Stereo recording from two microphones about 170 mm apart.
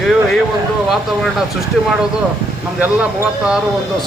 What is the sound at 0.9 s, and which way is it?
Speech, centre (ahead or behind).